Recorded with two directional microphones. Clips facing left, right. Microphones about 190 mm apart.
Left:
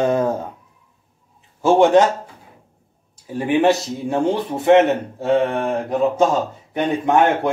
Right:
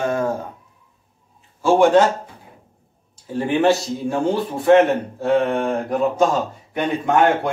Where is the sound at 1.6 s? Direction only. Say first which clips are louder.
Left 1 dB; 20° left (ahead or behind).